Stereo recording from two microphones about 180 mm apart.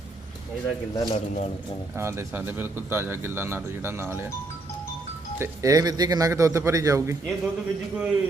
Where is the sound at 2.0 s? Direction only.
15° right (ahead or behind).